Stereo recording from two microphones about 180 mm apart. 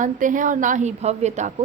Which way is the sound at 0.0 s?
45° right (ahead or behind).